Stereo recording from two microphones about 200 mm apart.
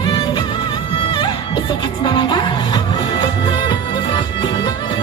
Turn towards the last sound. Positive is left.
turn(degrees=20)  # may be behind; listen again after turning